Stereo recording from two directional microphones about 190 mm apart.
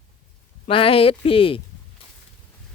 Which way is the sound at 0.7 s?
30° left (ahead or behind).